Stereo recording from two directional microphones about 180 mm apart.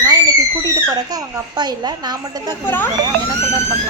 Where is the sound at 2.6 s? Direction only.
10° left (ahead or behind).